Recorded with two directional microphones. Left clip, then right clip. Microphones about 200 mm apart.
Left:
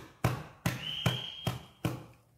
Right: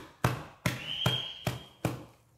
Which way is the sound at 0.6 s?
Centre (ahead or behind).